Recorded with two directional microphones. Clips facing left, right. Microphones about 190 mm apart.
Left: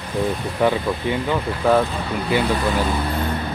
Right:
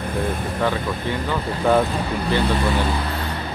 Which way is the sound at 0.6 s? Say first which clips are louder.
Left 5 dB; 15° left (ahead or behind).